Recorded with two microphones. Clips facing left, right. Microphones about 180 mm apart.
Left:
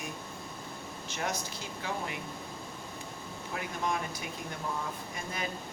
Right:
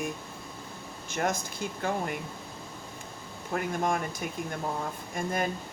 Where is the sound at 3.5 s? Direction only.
50° right (ahead or behind).